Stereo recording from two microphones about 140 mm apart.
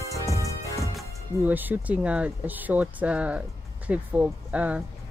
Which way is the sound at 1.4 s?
15° right (ahead or behind).